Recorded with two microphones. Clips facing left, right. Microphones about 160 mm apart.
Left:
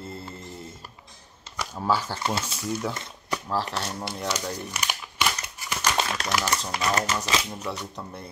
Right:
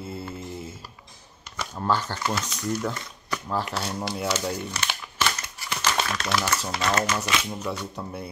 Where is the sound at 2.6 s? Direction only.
5° left (ahead or behind).